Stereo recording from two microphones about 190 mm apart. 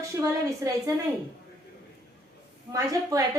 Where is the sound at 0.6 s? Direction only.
15° right (ahead or behind).